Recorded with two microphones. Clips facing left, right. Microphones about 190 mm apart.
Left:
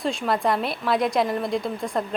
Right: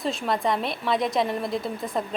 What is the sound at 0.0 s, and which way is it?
Speech, centre (ahead or behind).